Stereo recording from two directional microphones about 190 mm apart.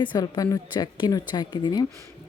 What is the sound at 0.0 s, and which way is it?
A woman's voice, 20° left (ahead or behind).